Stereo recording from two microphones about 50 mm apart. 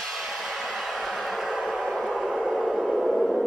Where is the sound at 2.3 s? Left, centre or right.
Centre.